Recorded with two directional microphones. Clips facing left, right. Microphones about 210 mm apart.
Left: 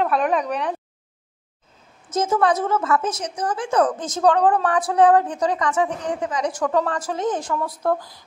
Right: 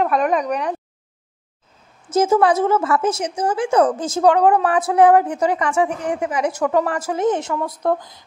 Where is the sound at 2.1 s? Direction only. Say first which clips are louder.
Right 4 dB; 30° right (ahead or behind).